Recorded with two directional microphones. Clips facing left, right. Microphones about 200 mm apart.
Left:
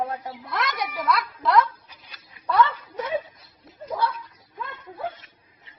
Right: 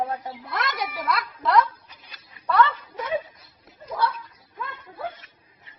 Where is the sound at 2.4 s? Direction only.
15° left (ahead or behind).